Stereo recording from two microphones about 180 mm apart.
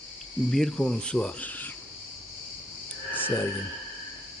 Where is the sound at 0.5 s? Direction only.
Centre (ahead or behind).